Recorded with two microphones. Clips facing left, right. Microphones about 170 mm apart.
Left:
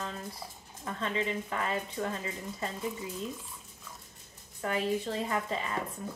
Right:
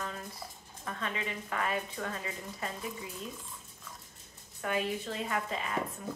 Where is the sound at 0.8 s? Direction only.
30° left (ahead or behind).